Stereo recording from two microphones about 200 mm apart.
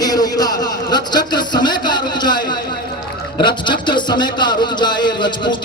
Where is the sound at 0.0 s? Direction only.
20° left (ahead or behind).